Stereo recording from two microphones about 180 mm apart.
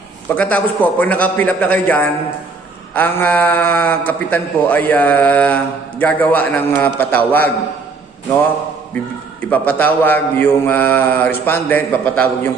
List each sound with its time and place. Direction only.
0.3 s speech: 5° left (ahead or behind)
9.5 s speech: 10° left (ahead or behind)